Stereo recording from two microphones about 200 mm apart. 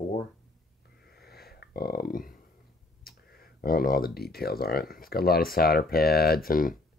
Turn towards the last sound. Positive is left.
turn(degrees=45)  # may be behind; listen again after turning